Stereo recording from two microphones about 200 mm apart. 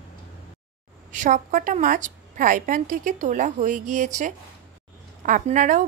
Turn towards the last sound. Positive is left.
turn(degrees=-40)  # may be behind; listen again after turning